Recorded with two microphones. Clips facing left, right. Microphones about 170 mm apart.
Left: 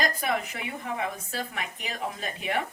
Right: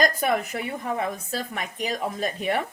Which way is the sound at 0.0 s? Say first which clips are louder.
Right 5 dB; 45° right (ahead or behind).